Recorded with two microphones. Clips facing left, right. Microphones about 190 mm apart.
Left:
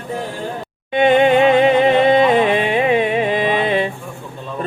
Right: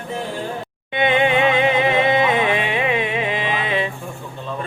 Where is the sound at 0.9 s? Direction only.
40° left (ahead or behind).